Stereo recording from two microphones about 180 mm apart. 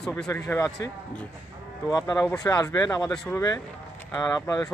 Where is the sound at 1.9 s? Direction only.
20° left (ahead or behind).